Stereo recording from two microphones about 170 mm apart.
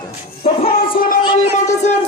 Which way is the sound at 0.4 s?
35° left (ahead or behind).